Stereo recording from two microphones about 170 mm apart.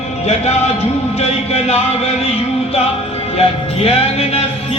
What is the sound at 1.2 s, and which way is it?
Music, 40° left (ahead or behind).